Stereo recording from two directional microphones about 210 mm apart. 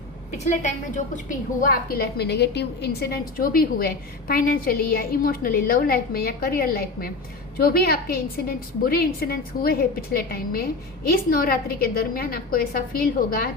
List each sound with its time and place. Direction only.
0.4 s a woman's voice: 35° left (ahead or behind)